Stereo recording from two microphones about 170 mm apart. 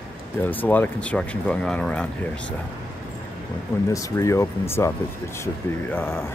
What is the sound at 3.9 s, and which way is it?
Speech, 20° left (ahead or behind).